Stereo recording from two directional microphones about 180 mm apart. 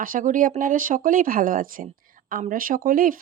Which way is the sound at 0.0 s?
45° right (ahead or behind).